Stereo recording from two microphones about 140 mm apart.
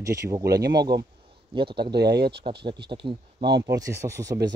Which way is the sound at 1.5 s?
35° right (ahead or behind).